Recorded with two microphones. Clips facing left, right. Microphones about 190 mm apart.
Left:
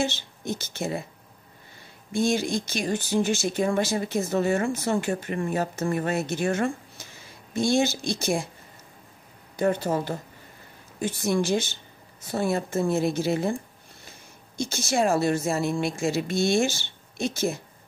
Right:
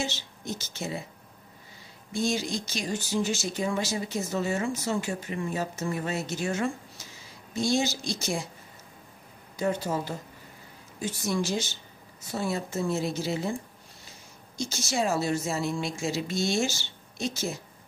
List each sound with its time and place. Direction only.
0.0 s speech: 55° left (ahead or behind)
2.1 s speech: 55° left (ahead or behind)
9.6 s speech: 55° left (ahead or behind)
14.6 s speech: 55° left (ahead or behind)